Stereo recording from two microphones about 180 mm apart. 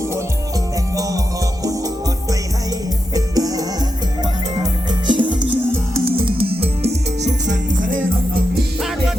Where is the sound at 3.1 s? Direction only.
20° right (ahead or behind).